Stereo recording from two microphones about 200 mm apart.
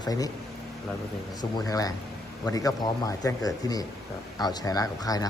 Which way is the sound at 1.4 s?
20° left (ahead or behind).